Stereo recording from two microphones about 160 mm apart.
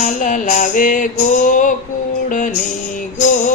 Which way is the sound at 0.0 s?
50° left (ahead or behind).